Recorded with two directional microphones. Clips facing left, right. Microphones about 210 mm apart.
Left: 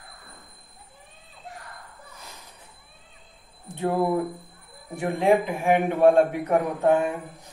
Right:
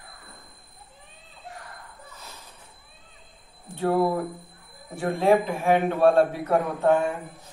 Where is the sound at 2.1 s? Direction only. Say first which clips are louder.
Even; 15° left (ahead or behind).